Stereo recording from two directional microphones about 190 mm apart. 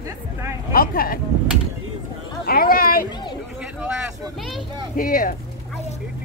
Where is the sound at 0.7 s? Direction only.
50° left (ahead or behind).